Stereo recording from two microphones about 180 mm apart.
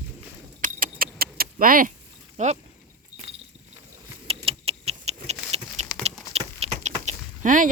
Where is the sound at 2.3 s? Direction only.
40° right (ahead or behind).